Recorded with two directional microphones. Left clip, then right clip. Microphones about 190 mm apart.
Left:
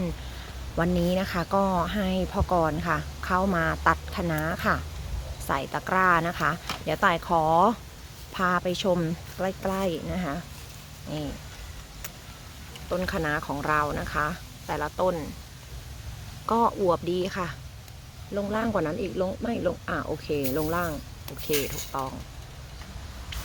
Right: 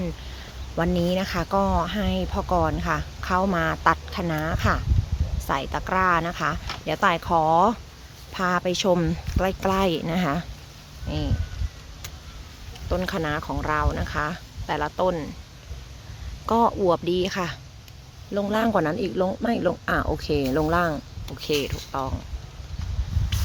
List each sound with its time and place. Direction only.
0.8 s speech: 10° right (ahead or behind); by 10.4 s 35° right (ahead or behind)
11.1 s speech: 25° right (ahead or behind)
12.9 s speech: 20° right (ahead or behind)
16.5 s speech: 15° right (ahead or behind)